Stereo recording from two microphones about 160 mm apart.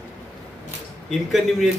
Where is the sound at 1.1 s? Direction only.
Centre (ahead or behind).